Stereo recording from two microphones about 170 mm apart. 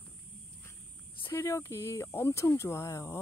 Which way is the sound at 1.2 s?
15° left (ahead or behind).